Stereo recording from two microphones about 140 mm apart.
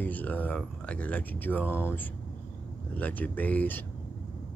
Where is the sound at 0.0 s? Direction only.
10° left (ahead or behind).